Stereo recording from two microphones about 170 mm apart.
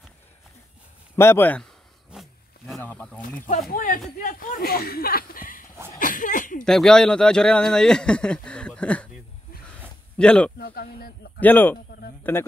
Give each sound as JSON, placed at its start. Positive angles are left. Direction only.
{"t": 1.1, "sound": "speech", "side_deg": 15}
{"t": 2.0, "sound": "roaring cats", "side_deg": 0}
{"t": 2.8, "sound": "a sound", "side_deg": 10}
{"t": 3.7, "sound": "speech", "side_deg": 55}
{"t": 6.6, "sound": "speech", "side_deg": 5}
{"t": 10.6, "sound": "speech", "side_deg": 65}
{"t": 11.3, "sound": "speech", "side_deg": 10}